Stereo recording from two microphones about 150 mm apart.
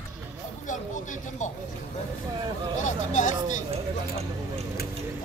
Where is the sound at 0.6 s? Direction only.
55° left (ahead or behind).